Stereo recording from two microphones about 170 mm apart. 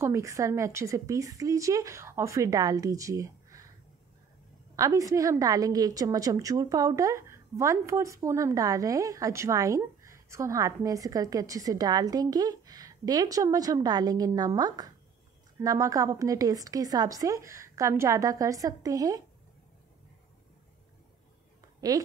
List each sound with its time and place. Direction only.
0.0 s a woman's voice: 15° right (ahead or behind)
4.7 s a woman's voice: 20° right (ahead or behind)